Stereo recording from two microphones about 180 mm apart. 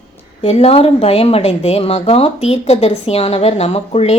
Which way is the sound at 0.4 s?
35° left (ahead or behind).